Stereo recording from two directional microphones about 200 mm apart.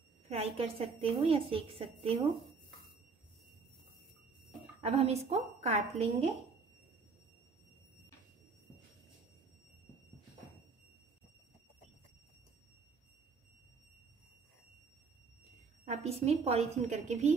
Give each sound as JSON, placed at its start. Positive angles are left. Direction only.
{"t": 0.3, "sound": "a woman's voice", "side_deg": -30}
{"t": 4.8, "sound": "a woman's voice", "side_deg": -30}
{"t": 15.8, "sound": "a woman's voice", "side_deg": -35}